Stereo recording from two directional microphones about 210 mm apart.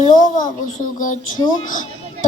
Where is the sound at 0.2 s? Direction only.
40° left (ahead or behind).